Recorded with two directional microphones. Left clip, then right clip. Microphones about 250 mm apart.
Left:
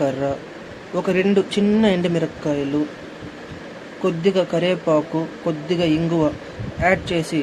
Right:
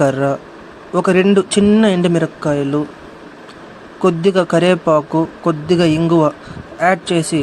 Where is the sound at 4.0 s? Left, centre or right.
Right.